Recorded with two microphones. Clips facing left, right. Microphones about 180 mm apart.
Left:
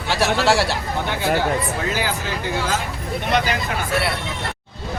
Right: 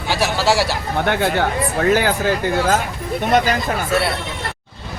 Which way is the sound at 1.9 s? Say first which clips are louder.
Right 8 dB; 50° right (ahead or behind).